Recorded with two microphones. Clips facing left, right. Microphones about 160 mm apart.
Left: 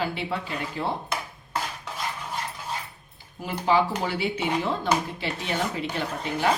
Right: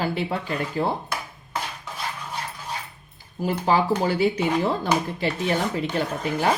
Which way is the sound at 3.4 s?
40° right (ahead or behind).